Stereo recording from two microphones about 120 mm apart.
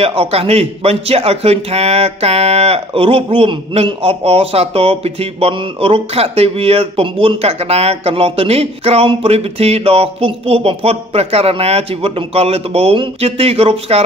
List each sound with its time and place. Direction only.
0.0 s a man's voice: 55° right (ahead or behind)